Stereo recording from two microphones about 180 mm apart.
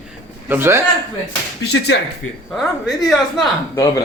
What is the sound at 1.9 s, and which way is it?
Speech, 90° left.